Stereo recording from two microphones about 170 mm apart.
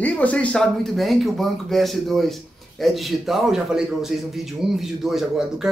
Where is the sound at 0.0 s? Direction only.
10° left (ahead or behind).